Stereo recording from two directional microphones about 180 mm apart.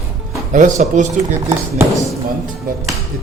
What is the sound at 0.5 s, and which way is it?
Speech, 45° right (ahead or behind).